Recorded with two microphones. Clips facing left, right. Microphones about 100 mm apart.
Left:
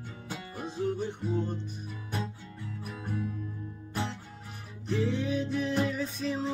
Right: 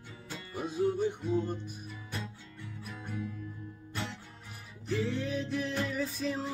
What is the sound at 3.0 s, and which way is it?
Music, 15° left (ahead or behind).